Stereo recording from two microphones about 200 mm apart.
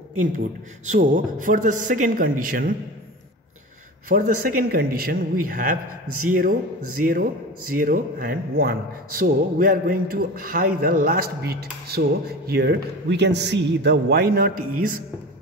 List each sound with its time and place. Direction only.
0.8 s a man's voice: 35° right (ahead or behind)
4.1 s speech: 50° right (ahead or behind)
7.0 s speech: 45° right (ahead or behind)